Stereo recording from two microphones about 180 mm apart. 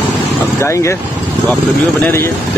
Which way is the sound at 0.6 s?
15° left (ahead or behind).